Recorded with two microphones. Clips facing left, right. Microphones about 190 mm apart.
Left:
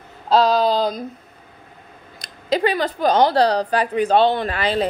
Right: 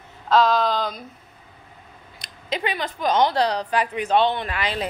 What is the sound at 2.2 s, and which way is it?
A woman's voice, 35° left (ahead or behind).